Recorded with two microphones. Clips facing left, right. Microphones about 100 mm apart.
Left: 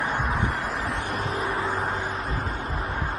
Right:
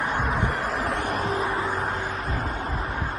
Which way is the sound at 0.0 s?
55° right (ahead or behind).